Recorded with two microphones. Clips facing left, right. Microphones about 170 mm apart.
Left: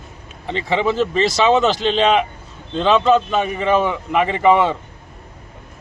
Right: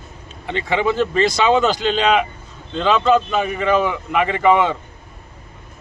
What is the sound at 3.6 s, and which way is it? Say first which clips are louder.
Speech: even; 30° left (ahead or behind).